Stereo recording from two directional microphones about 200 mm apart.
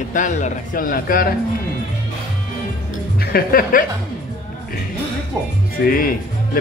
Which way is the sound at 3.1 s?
50° left (ahead or behind).